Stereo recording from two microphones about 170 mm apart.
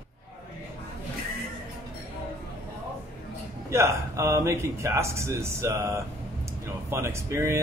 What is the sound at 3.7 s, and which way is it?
Speech, 15° right (ahead or behind).